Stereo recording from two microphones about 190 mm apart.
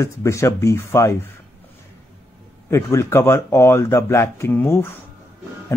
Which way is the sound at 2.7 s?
15° left (ahead or behind).